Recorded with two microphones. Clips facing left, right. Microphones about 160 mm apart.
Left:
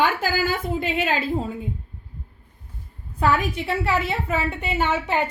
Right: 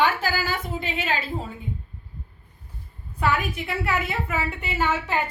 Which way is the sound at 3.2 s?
35° left (ahead or behind).